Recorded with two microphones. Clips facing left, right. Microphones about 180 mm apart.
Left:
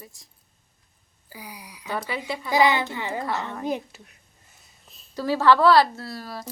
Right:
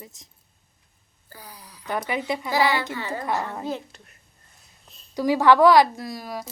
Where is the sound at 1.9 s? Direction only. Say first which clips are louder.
Right 3 dB; 15° right (ahead or behind).